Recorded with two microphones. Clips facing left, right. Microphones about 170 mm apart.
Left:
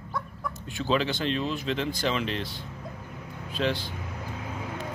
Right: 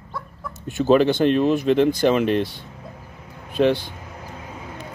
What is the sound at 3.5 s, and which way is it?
Speech, 55° right (ahead or behind).